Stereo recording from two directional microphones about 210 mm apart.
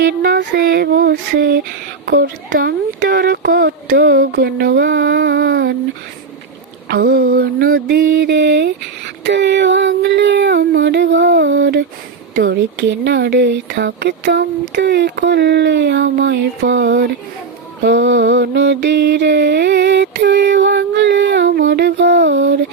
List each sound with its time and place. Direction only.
0.0 s a sound: 50° right (ahead or behind)
2.0 s speech: 50° right (ahead or behind)
6.8 s speech: 50° right (ahead or behind)
9.2 s mantra: 55° right (ahead or behind)